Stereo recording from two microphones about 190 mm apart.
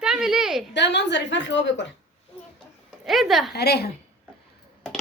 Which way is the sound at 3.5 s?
60° left (ahead or behind).